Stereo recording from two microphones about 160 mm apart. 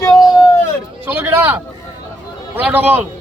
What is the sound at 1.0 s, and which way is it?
Speech, 15° right (ahead or behind).